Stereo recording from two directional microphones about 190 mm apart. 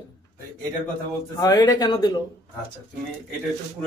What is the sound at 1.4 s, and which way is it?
Speech, 20° left (ahead or behind).